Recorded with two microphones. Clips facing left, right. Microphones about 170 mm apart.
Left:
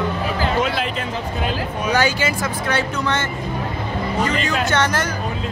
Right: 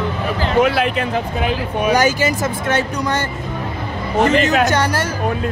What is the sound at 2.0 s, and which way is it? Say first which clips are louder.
Speech: right 4 dB; 45° right (ahead or behind).